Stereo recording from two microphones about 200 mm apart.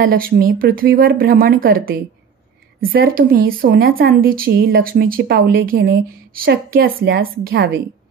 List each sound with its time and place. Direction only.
0.1 s a woman's voice: 45° right (ahead or behind)